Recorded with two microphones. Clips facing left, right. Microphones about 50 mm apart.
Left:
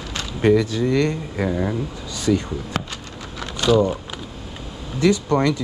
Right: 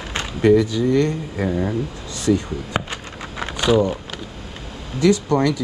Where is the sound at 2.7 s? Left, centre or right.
Centre.